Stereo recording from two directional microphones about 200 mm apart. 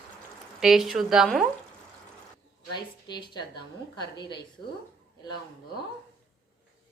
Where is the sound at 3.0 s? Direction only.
20° left (ahead or behind).